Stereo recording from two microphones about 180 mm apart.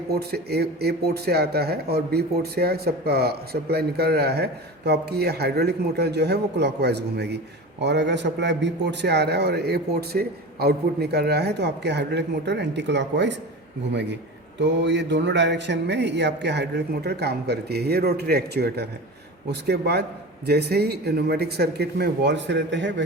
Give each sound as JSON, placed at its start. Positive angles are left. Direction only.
{"t": 0.1, "sound": "speech", "side_deg": -65}
{"t": 14.6, "sound": "speech", "side_deg": -75}